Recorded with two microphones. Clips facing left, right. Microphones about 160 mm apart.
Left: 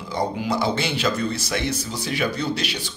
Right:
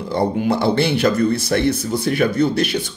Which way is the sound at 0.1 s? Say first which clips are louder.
Right 6 dB; 60° right (ahead or behind).